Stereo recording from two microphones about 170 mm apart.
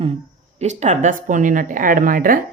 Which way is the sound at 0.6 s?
40° right (ahead or behind).